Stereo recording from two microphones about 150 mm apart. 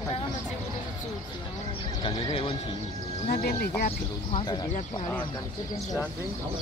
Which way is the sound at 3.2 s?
80° left.